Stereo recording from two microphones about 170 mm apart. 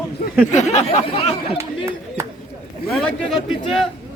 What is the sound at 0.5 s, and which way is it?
Speech, 45° left (ahead or behind).